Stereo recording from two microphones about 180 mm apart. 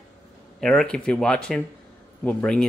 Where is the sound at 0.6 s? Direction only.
5° left (ahead or behind).